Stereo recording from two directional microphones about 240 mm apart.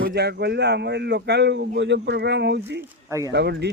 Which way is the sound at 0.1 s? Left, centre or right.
Right.